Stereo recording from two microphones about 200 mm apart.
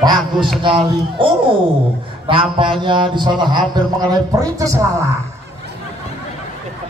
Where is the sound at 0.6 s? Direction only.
25° right (ahead or behind).